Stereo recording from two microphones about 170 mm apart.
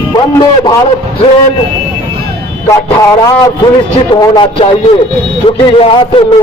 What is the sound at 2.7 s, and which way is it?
A man's voice, 20° left (ahead or behind).